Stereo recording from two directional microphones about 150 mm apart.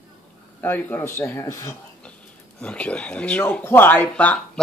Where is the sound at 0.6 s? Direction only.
15° left (ahead or behind).